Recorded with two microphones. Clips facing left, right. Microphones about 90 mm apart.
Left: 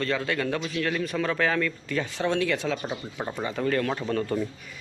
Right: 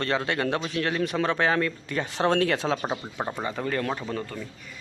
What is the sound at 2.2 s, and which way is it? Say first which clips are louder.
A man's voice: right 4 dB; 40° right (ahead or behind).